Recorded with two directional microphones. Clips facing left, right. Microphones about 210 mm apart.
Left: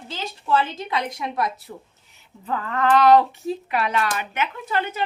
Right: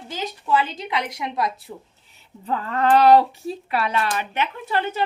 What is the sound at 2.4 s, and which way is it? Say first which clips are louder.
Speech: right 1 dB; 30° right (ahead or behind).